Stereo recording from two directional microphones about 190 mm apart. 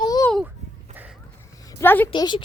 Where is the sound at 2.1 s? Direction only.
25° left (ahead or behind).